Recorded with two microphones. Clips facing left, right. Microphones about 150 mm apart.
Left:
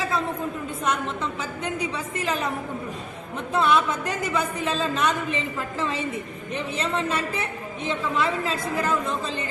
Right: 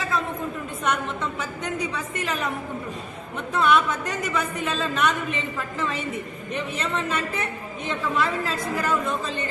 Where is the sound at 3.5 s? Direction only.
30° left (ahead or behind).